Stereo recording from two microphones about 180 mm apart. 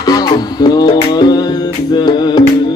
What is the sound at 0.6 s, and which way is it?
Music, 20° left (ahead or behind).